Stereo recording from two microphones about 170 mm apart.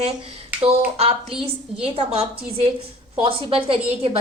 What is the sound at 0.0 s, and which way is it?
A woman's voice, 35° right (ahead or behind).